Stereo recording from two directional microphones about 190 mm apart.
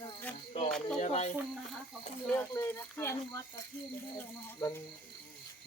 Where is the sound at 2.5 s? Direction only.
15° left (ahead or behind).